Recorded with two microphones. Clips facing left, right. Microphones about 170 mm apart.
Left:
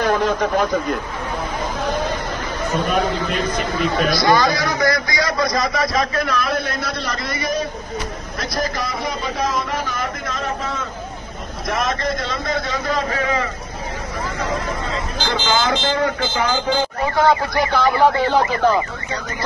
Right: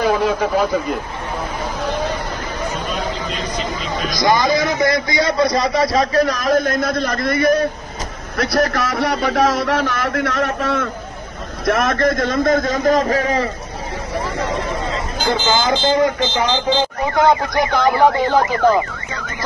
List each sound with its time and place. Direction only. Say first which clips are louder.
0.0 s speech: right 1 dB; 5° right (ahead or behind)
2.7 s speech: left 4 dB; 45° left (ahead or behind)
4.1 s a man's voice: right 3 dB; 15° right (ahead or behind); by 7.6 s 55° right (ahead or behind)
8.4 s a man's voice: right 7 dB; 65° right (ahead or behind)
11.6 s a man's voice: right 6 dB; 55° right (ahead or behind); by 13.5 s 35° right (ahead or behind)
15.1 s speech: right 2 dB; 20° right (ahead or behind)